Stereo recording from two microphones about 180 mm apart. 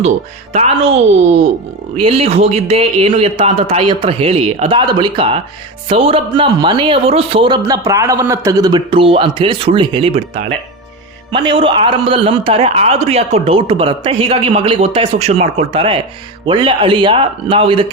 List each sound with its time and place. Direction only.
0.5 s a man's voice: 35° right (ahead or behind)